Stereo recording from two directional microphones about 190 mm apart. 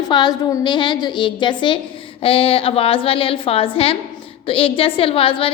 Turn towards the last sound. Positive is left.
turn(degrees=30)  # may be behind; listen again after turning